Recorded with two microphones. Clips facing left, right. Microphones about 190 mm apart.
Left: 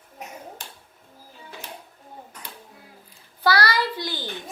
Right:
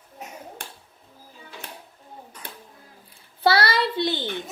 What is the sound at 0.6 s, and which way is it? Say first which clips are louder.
Finger snapping: right 3 dB; 60° right (ahead or behind).